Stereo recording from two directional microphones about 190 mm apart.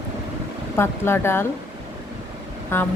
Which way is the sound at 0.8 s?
15° left (ahead or behind).